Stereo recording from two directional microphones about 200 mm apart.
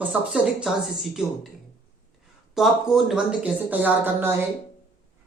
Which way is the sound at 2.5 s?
Centre (ahead or behind).